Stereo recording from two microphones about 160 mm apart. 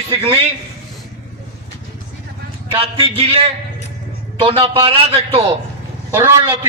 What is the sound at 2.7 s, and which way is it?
A man's voice, 35° right (ahead or behind).